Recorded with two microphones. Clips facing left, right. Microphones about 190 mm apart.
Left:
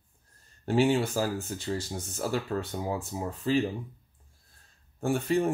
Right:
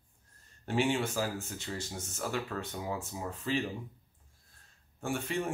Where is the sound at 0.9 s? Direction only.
35° left (ahead or behind).